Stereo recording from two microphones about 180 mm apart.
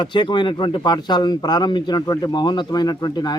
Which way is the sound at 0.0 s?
25° left (ahead or behind).